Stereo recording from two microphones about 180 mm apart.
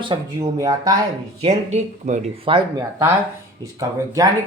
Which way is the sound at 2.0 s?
40° right (ahead or behind).